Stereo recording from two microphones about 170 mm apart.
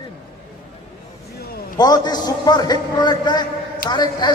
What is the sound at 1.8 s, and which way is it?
A man's voice, 25° left (ahead or behind).